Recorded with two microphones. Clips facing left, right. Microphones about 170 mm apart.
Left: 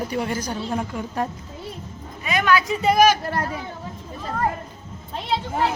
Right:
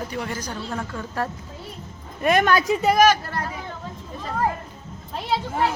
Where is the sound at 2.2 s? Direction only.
50° right (ahead or behind).